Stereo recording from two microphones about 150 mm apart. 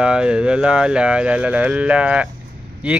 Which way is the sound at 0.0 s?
5° right (ahead or behind).